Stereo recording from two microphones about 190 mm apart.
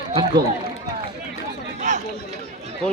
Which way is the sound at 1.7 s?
40° right (ahead or behind).